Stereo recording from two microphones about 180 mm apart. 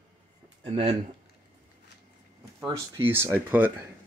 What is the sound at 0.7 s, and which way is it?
Speech, 35° right (ahead or behind).